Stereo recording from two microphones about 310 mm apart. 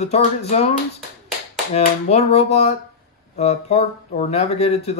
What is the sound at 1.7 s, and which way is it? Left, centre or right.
Speech, left.